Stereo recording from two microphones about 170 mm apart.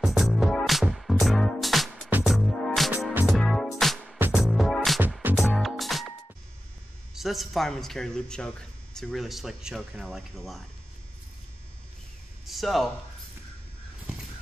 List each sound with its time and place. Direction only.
0.0 s music: centre (ahead or behind)
7.2 s a man's voice: centre (ahead or behind)
12.4 s speech: centre (ahead or behind)